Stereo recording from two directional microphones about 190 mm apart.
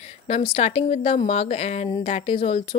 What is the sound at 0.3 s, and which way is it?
Speech, 30° left (ahead or behind).